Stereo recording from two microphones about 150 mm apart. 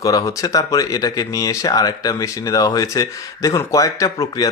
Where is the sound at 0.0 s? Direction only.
20° left (ahead or behind).